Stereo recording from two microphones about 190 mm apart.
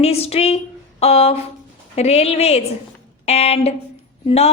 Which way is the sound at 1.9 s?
35° left (ahead or behind).